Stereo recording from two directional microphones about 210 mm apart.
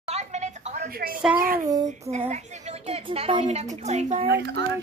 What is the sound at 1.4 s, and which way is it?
A woman's voice, 40° right (ahead or behind).